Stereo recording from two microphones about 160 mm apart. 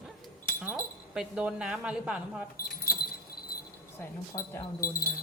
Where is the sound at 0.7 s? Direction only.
5° right (ahead or behind).